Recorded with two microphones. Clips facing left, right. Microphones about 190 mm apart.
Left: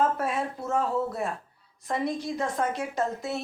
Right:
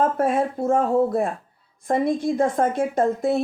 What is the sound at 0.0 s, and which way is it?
Speech, 50° right (ahead or behind).